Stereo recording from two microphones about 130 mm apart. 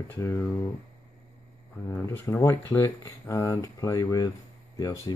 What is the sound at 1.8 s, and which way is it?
Speech, 15° left (ahead or behind).